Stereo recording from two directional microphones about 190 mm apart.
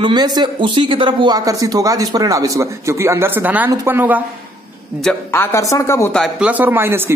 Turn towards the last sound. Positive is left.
turn(degrees=-10)  # may be behind; listen again after turning